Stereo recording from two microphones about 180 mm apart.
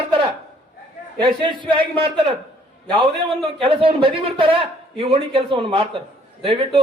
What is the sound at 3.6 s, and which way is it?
A man's voice, 30° right (ahead or behind).